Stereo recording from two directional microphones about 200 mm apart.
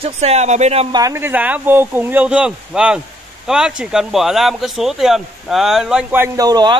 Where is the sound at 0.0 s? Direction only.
30° right (ahead or behind).